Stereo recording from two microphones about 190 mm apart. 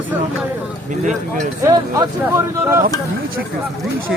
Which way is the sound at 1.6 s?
15° right (ahead or behind).